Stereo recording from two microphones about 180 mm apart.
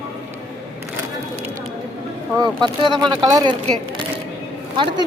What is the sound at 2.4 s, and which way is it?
Speech, 25° right (ahead or behind).